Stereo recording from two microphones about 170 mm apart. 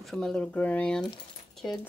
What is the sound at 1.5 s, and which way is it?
Keys jangling, centre (ahead or behind).